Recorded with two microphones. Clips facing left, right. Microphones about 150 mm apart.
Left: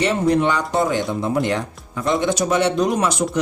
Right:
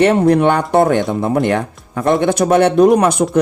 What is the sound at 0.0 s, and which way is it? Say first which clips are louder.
Speech: right 7 dB; 60° right (ahead or behind).